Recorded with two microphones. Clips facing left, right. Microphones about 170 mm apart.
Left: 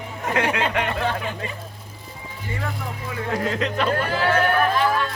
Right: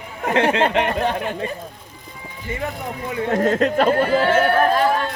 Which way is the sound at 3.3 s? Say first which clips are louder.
Right 7 dB; 45° right (ahead or behind).